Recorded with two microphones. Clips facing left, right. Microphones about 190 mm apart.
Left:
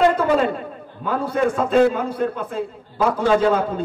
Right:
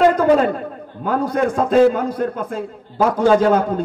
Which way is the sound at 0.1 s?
40° right (ahead or behind).